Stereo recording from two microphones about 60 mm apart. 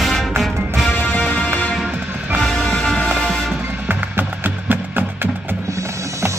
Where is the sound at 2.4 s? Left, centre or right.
Centre.